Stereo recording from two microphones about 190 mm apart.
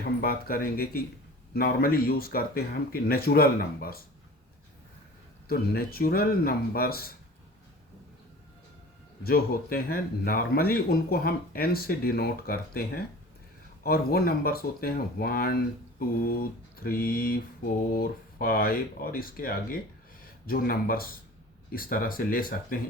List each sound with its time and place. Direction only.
0.0 s speech: 50° left (ahead or behind)
5.5 s speech: 50° left (ahead or behind)
9.2 s speech: 50° left (ahead or behind)